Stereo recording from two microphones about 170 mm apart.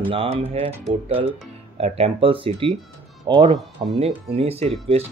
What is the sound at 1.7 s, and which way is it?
Speech, 35° right (ahead or behind).